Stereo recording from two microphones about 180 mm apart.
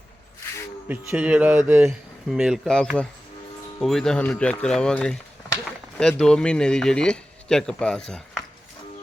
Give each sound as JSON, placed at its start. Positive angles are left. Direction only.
{"t": 0.9, "sound": "speech", "side_deg": -5}
{"t": 2.3, "sound": "speech", "side_deg": 0}